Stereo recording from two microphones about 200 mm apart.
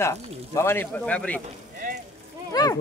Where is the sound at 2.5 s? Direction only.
20° left (ahead or behind).